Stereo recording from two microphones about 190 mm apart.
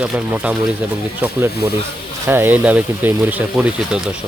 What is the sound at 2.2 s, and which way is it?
Speech, 10° right (ahead or behind).